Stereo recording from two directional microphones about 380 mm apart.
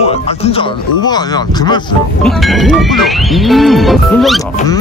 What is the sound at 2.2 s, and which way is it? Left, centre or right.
Speech, centre.